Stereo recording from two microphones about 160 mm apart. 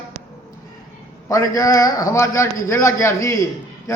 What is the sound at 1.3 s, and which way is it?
A man's voice, 20° left (ahead or behind).